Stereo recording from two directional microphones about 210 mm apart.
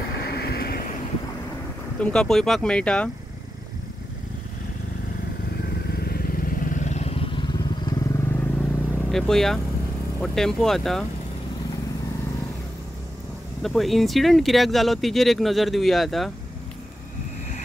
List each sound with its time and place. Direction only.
0.5 s vehicle: 45° left (ahead or behind)
2.0 s speech: 5° left (ahead or behind)
5.9 s vehicle: 50° left (ahead or behind); by 8.6 s 10° left (ahead or behind)
8.9 s speech: centre (ahead or behind)
13.6 s speech: centre (ahead or behind)